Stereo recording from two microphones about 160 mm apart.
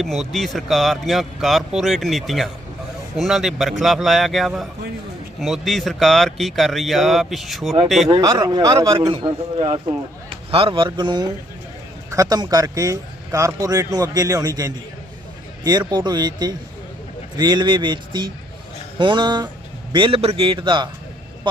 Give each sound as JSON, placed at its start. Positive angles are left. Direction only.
{"t": 0.0, "sound": "speech", "side_deg": 0}
{"t": 8.1, "sound": "a man's voice", "side_deg": -20}